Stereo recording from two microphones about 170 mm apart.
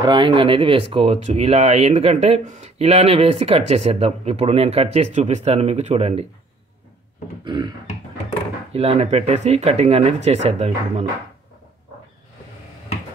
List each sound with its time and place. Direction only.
0.0 s speech: 30° right (ahead or behind)
7.4 s a sound: 25° right (ahead or behind)
8.7 s speech: 35° right (ahead or behind)